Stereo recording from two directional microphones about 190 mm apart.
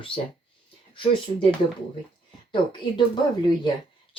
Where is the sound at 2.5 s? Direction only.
25° left (ahead or behind).